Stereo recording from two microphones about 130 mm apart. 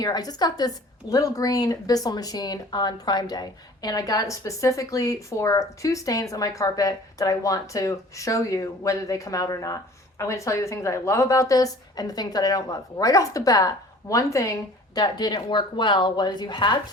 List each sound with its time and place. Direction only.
0.0 s a woman's voice: 30° left (ahead or behind)